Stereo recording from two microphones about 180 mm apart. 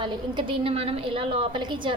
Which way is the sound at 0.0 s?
25° right (ahead or behind).